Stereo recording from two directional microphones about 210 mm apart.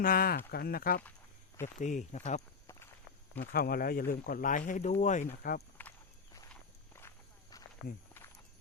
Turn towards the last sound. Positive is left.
turn(degrees=15)  # may be behind; listen again after turning